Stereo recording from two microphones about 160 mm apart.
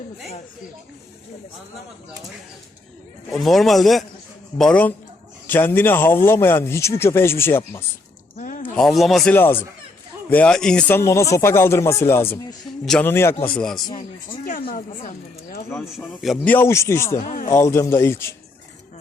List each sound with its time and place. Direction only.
3.3 s speech: centre (ahead or behind)
8.4 s a sound: 55° left (ahead or behind)
8.7 s speech: centre (ahead or behind)
9.3 s speech: 10° left (ahead or behind)
14.3 s speech: 60° left (ahead or behind)
16.0 s speech: centre (ahead or behind)
16.5 s speech: 15° left (ahead or behind)
17.2 s speech: 55° left (ahead or behind)
17.6 s speech: 15° left (ahead or behind)